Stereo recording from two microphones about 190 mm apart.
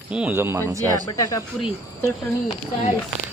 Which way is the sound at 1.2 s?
15° left (ahead or behind).